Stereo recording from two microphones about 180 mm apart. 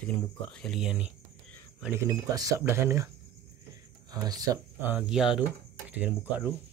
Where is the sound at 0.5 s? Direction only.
Centre (ahead or behind).